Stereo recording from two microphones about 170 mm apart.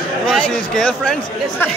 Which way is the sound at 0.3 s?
5° left (ahead or behind).